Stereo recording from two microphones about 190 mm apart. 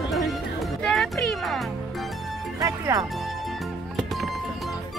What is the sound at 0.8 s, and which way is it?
Music, centre (ahead or behind).